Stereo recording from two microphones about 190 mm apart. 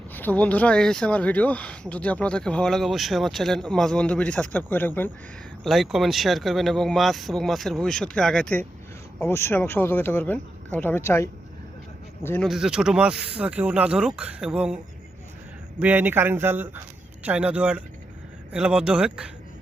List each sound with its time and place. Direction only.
0.1 s speech: 10° left (ahead or behind)
5.6 s speech: centre (ahead or behind)
12.5 s speech: 5° right (ahead or behind)
15.8 s speech: 10° right (ahead or behind)